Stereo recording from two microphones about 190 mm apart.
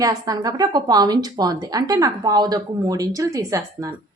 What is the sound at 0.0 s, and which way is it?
A woman's voice, 20° right (ahead or behind).